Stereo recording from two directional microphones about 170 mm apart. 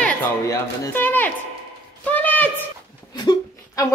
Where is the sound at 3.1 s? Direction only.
25° left (ahead or behind).